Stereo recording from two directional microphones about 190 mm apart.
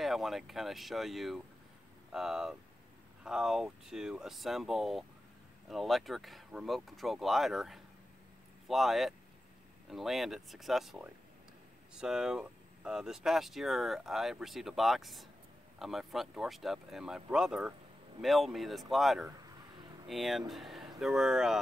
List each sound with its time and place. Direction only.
0.0 s speech: centre (ahead or behind)